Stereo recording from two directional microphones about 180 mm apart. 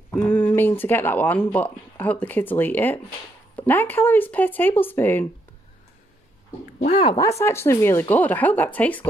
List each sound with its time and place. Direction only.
0.1 s speech: 10° left (ahead or behind)
6.9 s speech: 30° left (ahead or behind); by 9.0 s 10° left (ahead or behind)